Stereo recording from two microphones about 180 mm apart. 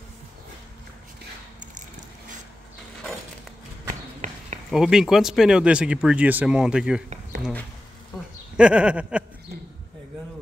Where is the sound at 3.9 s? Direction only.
40° right (ahead or behind).